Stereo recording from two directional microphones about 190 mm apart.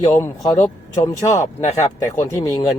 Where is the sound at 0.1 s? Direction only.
15° left (ahead or behind).